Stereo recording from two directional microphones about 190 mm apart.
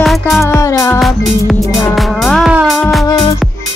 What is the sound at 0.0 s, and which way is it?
Music, centre (ahead or behind).